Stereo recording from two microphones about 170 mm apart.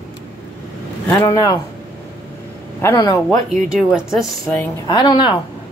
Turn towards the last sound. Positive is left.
turn(degrees=25)  # may be behind; listen again after turning